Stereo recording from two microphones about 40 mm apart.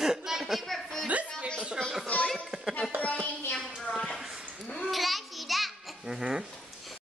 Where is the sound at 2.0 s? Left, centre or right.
Left.